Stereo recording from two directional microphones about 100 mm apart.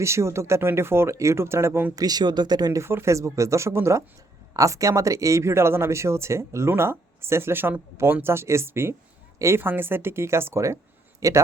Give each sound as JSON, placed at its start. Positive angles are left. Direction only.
{"t": 0.0, "sound": "speech", "side_deg": -30}
{"t": 2.0, "sound": "speech", "side_deg": -40}
{"t": 2.8, "sound": "speech", "side_deg": -25}